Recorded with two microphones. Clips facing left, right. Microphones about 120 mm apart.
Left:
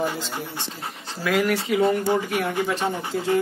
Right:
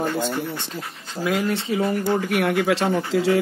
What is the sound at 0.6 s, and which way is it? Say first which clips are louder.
Speech: right 1 dB; 30° left (ahead or behind).